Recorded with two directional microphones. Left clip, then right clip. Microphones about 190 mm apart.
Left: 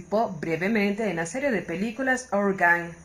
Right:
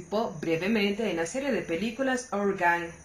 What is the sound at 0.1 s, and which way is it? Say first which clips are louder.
Speech: left 3 dB; 45° left (ahead or behind).